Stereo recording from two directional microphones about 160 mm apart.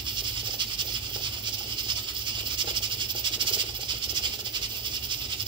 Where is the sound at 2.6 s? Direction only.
30° right (ahead or behind).